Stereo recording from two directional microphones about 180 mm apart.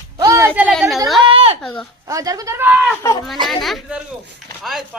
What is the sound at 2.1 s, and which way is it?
Speech, 20° right (ahead or behind).